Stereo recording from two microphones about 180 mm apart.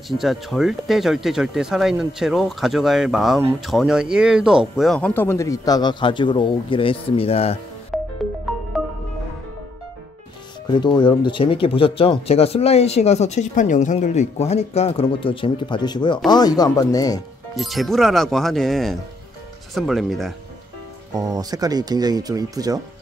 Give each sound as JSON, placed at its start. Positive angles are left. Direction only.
{"t": 0.2, "sound": "speech", "side_deg": 0}
{"t": 7.9, "sound": "music", "side_deg": 0}
{"t": 10.7, "sound": "speech", "side_deg": 25}
{"t": 17.6, "sound": "speech", "side_deg": 0}
{"t": 21.1, "sound": "speech", "side_deg": -20}